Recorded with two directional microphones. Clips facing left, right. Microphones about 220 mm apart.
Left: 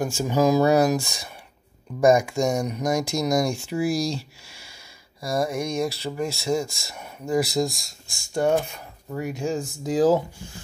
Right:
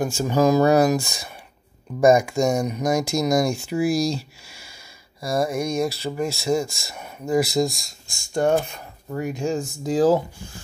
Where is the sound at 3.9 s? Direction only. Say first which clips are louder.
Right 3 dB; 45° right (ahead or behind).